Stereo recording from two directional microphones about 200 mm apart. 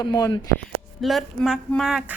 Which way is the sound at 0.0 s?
20° left (ahead or behind).